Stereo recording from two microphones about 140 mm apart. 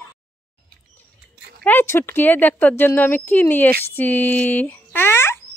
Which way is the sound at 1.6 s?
15° left (ahead or behind).